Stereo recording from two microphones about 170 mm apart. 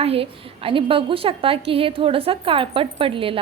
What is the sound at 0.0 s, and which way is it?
A woman's voice, 35° right (ahead or behind).